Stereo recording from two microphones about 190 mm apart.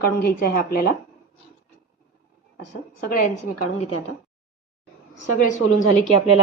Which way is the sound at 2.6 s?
50° left (ahead or behind).